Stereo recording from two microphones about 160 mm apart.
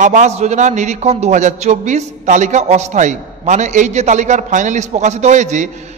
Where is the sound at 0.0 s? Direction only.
50° right (ahead or behind).